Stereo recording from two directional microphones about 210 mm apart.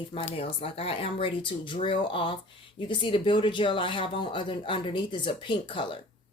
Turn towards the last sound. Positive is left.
turn(degrees=25)  # may be behind; listen again after turning